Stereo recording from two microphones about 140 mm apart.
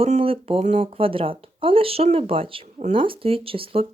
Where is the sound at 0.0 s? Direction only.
45° right (ahead or behind).